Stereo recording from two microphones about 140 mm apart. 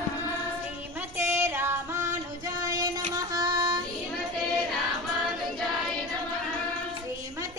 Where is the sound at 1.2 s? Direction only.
15° right (ahead or behind).